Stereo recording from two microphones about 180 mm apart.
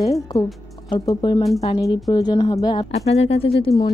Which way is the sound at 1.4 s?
Centre (ahead or behind).